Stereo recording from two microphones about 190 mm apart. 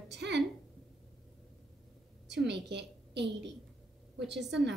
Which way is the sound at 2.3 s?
65° right (ahead or behind).